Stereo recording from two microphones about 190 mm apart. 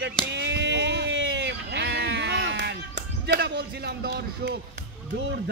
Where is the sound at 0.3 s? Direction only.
65° right (ahead or behind).